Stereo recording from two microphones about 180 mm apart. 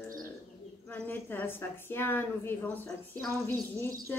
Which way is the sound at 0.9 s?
10° left (ahead or behind).